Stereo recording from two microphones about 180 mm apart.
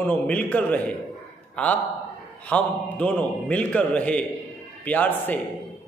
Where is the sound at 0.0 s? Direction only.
5° left (ahead or behind).